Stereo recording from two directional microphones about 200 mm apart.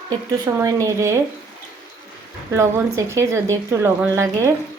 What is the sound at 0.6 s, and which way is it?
Speech, 15° right (ahead or behind).